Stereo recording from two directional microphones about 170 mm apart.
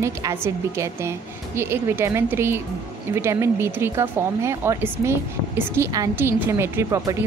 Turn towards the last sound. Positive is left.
turn(degrees=-15)  # may be behind; listen again after turning